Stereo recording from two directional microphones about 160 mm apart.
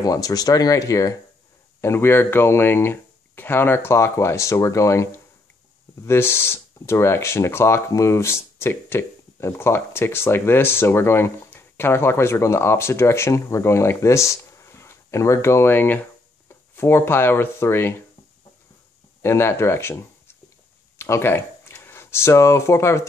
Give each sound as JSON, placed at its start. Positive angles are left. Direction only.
{"t": 0.0, "sound": "speech", "side_deg": 20}
{"t": 19.2, "sound": "speech", "side_deg": 15}